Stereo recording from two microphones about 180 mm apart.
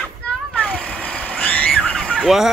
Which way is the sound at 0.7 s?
5° left (ahead or behind).